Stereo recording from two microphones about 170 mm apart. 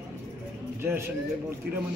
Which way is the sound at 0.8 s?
10° right (ahead or behind).